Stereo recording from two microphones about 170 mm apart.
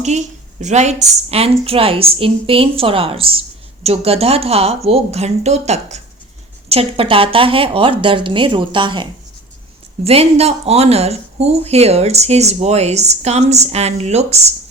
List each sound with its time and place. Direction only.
0.0 s speech: 45° right (ahead or behind)